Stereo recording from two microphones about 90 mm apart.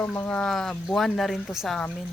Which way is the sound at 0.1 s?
15° left (ahead or behind).